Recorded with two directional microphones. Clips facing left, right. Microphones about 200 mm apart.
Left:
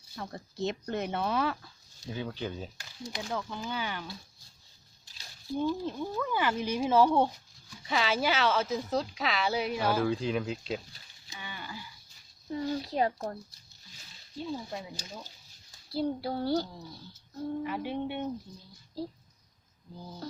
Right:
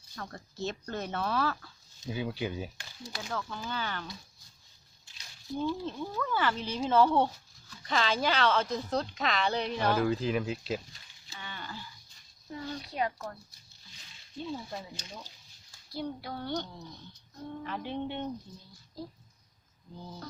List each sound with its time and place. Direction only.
0.2 s speech: 15° left (ahead or behind)
2.0 s speech: 10° right (ahead or behind)
3.0 s speech: 15° left (ahead or behind)
5.5 s speech: 15° left (ahead or behind); by 10.8 s 5° right (ahead or behind)
11.3 s speech: 15° left (ahead or behind)
12.5 s speech: 30° left (ahead or behind)
14.3 s speech: 10° left (ahead or behind)
15.9 s speech: 30° left (ahead or behind)
17.6 s speech: 10° left (ahead or behind)